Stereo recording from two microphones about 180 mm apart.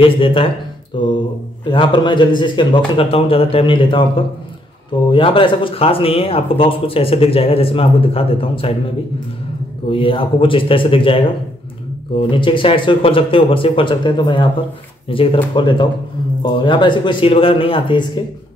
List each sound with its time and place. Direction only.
0.0 s speech: 30° left (ahead or behind)
9.8 s speech: 30° left (ahead or behind)